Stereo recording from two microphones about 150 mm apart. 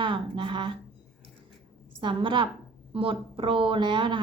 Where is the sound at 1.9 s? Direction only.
35° right (ahead or behind).